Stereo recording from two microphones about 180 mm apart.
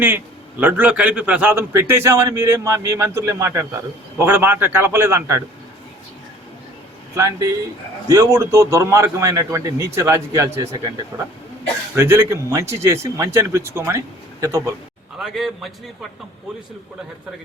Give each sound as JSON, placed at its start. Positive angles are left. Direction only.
{"t": 0.0, "sound": "a man's voice", "side_deg": -10}
{"t": 7.2, "sound": "a man's voice", "side_deg": -20}
{"t": 11.9, "sound": "a man's voice", "side_deg": -15}
{"t": 15.2, "sound": "a man's voice", "side_deg": 0}